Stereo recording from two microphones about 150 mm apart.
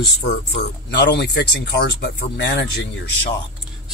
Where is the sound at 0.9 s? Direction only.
90° left.